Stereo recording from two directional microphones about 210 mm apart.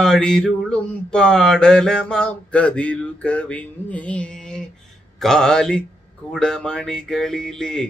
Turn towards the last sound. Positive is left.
turn(degrees=5)  # may be behind; listen again after turning